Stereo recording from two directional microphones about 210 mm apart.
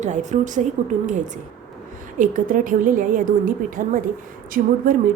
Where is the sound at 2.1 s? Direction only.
40° right (ahead or behind).